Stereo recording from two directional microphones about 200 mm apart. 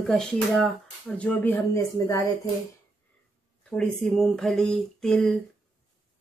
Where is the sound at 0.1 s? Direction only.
Centre (ahead or behind).